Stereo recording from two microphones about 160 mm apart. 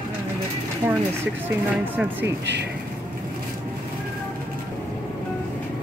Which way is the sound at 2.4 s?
90° right.